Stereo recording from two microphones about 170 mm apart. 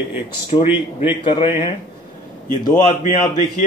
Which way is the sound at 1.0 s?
30° left (ahead or behind).